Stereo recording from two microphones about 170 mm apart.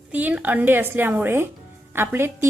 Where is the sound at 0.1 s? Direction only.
10° right (ahead or behind).